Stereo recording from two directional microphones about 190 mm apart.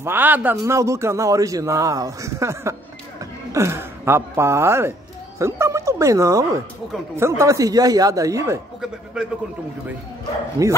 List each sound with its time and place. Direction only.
0.0 s a man's voice: 10° right (ahead or behind)
10.6 s speech: 20° right (ahead or behind)